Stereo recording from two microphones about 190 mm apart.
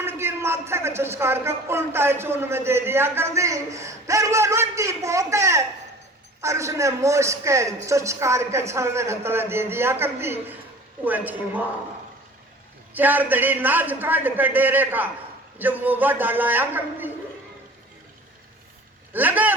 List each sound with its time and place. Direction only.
0.0 s a man's voice: 10° right (ahead or behind)
12.9 s a man's voice: 10° right (ahead or behind)
19.1 s a man's voice: 10° right (ahead or behind)